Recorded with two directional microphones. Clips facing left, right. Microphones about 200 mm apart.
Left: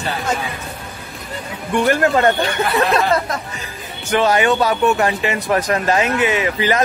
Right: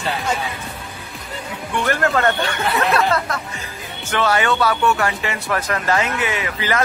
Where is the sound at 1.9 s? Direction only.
20° left (ahead or behind).